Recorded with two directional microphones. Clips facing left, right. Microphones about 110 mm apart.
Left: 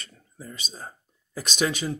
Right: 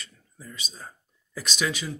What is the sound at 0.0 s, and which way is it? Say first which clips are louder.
Speech: left 3 dB; 40° left (ahead or behind).